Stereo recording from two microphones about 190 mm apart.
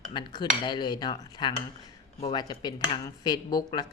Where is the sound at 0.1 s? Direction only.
25° left (ahead or behind).